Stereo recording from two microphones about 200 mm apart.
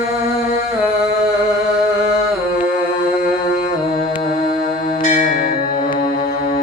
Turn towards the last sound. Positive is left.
turn(degrees=35)  # may be behind; listen again after turning